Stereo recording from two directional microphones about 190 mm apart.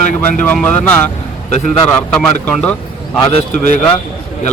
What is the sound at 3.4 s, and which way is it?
Speech, 40° left (ahead or behind).